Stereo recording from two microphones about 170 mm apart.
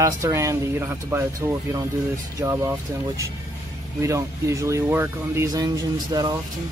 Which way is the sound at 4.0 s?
15° right (ahead or behind).